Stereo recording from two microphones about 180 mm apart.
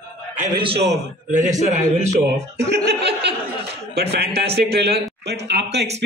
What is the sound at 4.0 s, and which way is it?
A man's voice, 65° right (ahead or behind).